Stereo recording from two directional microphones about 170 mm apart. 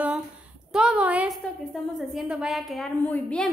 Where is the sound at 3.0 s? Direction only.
10° left (ahead or behind).